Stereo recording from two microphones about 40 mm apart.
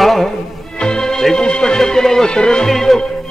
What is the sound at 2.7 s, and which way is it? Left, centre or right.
Music, centre.